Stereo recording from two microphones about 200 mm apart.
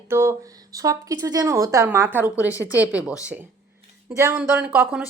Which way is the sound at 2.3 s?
15° left (ahead or behind).